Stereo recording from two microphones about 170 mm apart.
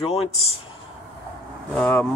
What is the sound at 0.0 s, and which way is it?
Speech, 35° left (ahead or behind).